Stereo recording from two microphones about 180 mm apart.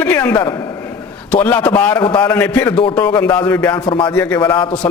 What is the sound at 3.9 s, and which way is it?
Speech, 25° left (ahead or behind).